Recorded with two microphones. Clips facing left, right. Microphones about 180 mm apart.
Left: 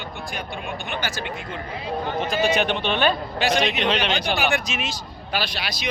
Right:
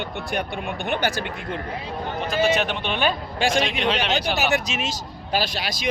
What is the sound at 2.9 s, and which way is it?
Speech, 10° right (ahead or behind).